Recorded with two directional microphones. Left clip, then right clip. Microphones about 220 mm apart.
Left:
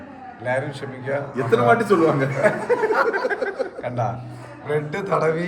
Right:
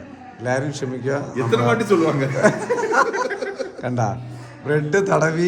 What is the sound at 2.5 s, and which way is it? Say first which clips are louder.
Speech: even; 15° right (ahead or behind).